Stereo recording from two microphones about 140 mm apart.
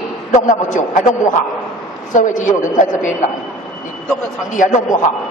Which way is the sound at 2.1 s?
65° left (ahead or behind).